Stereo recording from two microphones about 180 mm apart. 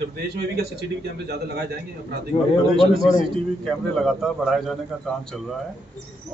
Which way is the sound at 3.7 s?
Centre (ahead or behind).